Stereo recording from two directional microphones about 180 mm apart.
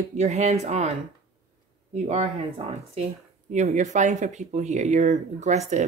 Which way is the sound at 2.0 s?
35° right (ahead or behind).